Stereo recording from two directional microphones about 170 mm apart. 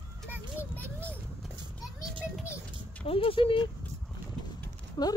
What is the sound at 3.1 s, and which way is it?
Speech, 35° left (ahead or behind).